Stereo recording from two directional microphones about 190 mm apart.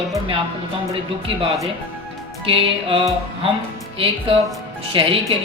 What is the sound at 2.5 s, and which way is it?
A woman's voice, 30° right (ahead or behind).